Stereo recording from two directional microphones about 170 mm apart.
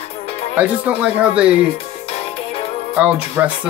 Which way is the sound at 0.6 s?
5° right (ahead or behind).